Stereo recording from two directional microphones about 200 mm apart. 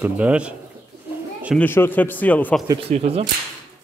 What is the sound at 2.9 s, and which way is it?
Speech, 30° right (ahead or behind).